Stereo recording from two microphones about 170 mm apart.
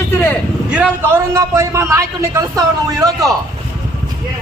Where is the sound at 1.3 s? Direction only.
15° right (ahead or behind).